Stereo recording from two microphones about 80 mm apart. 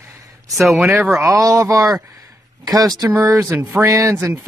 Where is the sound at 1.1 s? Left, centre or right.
Right.